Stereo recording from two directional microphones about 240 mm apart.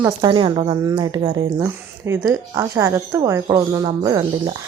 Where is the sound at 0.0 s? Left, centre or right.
Centre.